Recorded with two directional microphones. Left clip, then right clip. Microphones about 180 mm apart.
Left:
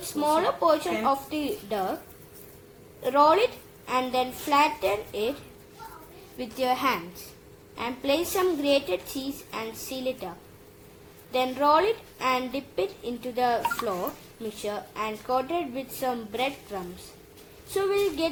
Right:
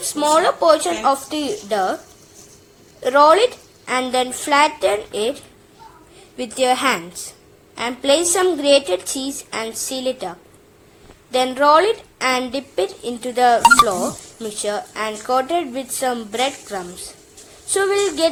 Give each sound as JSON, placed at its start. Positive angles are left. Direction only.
{"t": 0.2, "sound": "a woman's voice", "side_deg": -15}
{"t": 3.0, "sound": "a woman's voice", "side_deg": -15}
{"t": 6.3, "sound": "a woman's voice", "side_deg": -20}
{"t": 14.6, "sound": "a woman's voice", "side_deg": -15}